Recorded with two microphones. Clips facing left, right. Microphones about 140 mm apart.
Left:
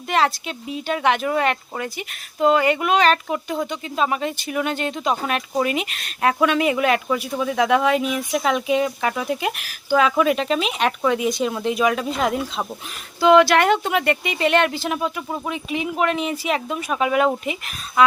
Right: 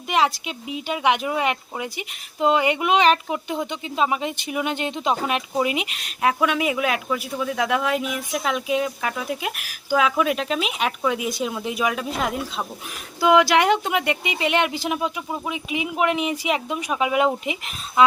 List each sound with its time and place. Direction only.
0.1 s speech: 15° right (ahead or behind)
13.1 s speech: 15° right (ahead or behind)